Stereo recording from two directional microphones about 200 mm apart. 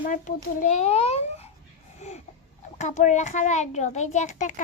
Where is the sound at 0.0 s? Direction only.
40° left (ahead or behind).